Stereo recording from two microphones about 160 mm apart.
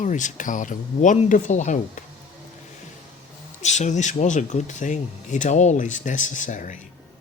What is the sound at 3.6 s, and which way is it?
Speech, 45° left (ahead or behind).